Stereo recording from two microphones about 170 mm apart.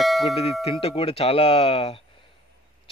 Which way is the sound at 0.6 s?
35° left (ahead or behind).